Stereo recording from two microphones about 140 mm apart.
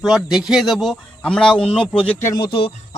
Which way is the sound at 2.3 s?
35° left (ahead or behind).